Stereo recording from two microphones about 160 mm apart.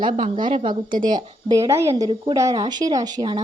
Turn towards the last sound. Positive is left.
turn(degrees=-25)  # may be behind; listen again after turning